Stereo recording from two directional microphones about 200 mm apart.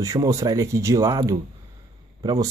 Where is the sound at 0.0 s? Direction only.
15° right (ahead or behind).